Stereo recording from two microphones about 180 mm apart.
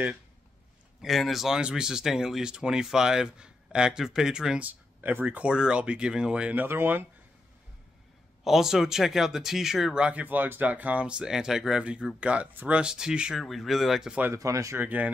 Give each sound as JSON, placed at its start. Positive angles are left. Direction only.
{"t": 1.0, "sound": "speech", "side_deg": 0}
{"t": 8.5, "sound": "speech", "side_deg": 0}